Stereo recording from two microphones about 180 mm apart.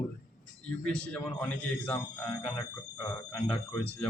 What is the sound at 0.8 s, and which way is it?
Speech, 5° left (ahead or behind).